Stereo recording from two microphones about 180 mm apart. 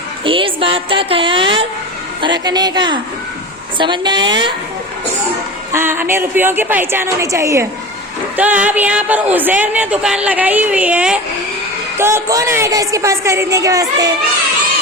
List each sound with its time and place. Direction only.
0.3 s a woman's voice: 30° right (ahead or behind)
5.7 s speech: 15° right (ahead or behind)